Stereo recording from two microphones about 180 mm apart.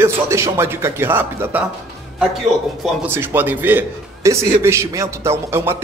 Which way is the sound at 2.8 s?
10° right (ahead or behind).